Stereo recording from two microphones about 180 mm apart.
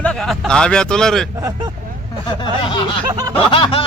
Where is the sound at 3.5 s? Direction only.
30° left (ahead or behind).